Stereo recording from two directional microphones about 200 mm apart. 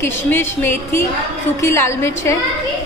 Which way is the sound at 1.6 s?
15° left (ahead or behind).